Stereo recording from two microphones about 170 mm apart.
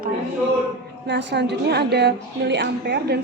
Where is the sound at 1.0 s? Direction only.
90° right.